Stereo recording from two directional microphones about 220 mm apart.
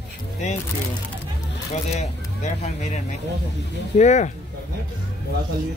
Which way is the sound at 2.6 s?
30° left (ahead or behind).